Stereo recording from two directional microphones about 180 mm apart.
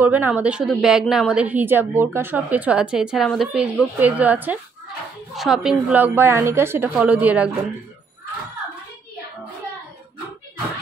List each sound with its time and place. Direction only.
0.0 s a woman's voice: 10° right (ahead or behind)